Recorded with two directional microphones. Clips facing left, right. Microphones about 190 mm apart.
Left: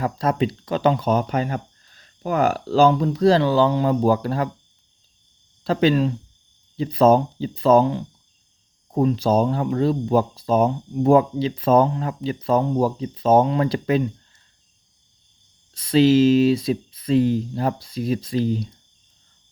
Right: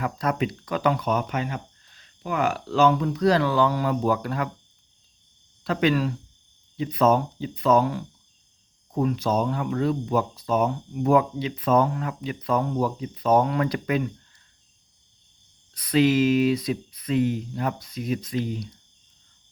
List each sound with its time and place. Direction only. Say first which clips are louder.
0.0 s speech: left 4 dB; 30° left (ahead or behind)
5.6 s speech: left 4 dB; 30° left (ahead or behind)
15.7 s speech: left 5 dB; 25° left (ahead or behind)